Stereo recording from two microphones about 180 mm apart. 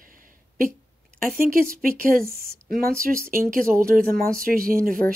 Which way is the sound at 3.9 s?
50° right (ahead or behind).